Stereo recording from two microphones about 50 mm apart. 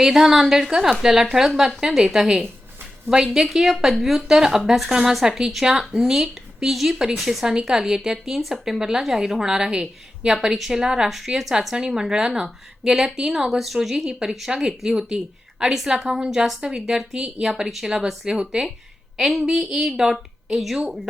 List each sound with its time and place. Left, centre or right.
0.0 s a woman's voice: centre